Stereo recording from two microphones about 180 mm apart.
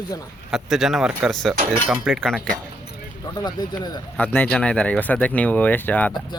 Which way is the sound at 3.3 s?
20° left (ahead or behind).